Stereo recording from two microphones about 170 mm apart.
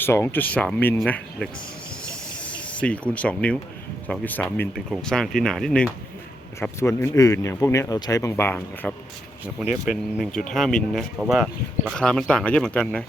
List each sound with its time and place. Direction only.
0.0 s speech: 15° left (ahead or behind)
2.0 s a sound: 5° left (ahead or behind)
4.1 s speech: 10° left (ahead or behind)
6.6 s speech: 15° left (ahead or behind)
9.6 s speech: centre (ahead or behind)